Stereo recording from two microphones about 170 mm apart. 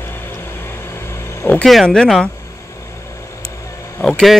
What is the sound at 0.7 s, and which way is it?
Vehicle, 15° left (ahead or behind).